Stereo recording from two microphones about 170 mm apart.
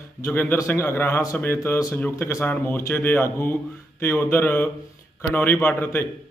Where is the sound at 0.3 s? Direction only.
10° left (ahead or behind).